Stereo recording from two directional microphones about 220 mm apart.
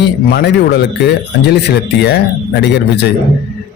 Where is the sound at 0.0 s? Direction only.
45° left (ahead or behind).